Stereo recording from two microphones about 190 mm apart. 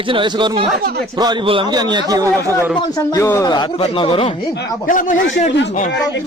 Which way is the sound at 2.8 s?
20° left (ahead or behind).